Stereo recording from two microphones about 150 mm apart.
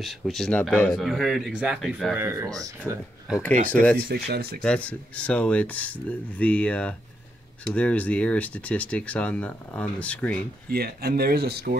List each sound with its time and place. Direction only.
0.0 s speech: centre (ahead or behind)
2.1 s speech: 20° right (ahead or behind)
3.7 s speech: 10° left (ahead or behind)
4.1 s speech: 90° right
4.6 s speech: 10° left (ahead or behind)
10.7 s speech: 90° right